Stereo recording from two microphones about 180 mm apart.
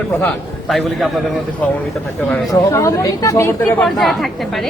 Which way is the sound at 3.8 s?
Centre (ahead or behind).